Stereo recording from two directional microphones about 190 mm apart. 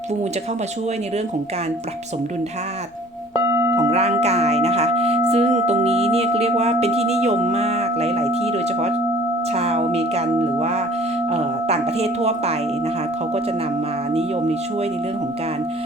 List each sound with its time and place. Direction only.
3.8 s speech: 35° right (ahead or behind)
14.1 s speech: 30° right (ahead or behind)